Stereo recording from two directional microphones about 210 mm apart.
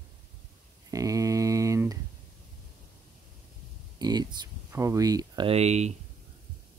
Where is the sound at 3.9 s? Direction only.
20° right (ahead or behind).